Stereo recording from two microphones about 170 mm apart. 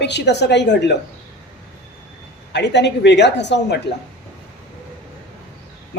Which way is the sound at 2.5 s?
90° left.